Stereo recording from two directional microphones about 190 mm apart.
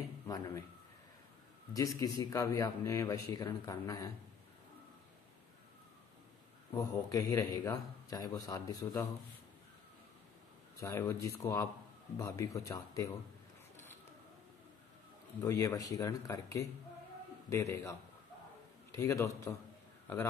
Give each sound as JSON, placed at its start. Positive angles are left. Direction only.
{"t": 1.7, "sound": "a man's voice", "side_deg": 15}
{"t": 6.7, "sound": "a man's voice", "side_deg": 15}
{"t": 10.8, "sound": "a man's voice", "side_deg": 15}
{"t": 15.4, "sound": "a man's voice", "side_deg": 15}
{"t": 18.9, "sound": "a man's voice", "side_deg": 15}